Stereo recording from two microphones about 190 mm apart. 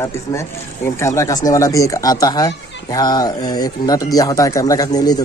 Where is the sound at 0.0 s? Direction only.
15° left (ahead or behind).